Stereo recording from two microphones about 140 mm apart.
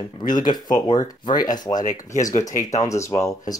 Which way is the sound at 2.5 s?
65° left (ahead or behind).